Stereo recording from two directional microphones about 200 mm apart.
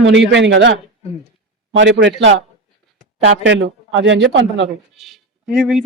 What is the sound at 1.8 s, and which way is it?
A man's voice, 65° right (ahead or behind).